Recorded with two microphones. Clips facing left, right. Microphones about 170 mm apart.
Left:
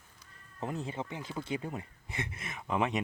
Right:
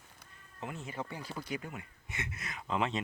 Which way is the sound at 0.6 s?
35° left (ahead or behind).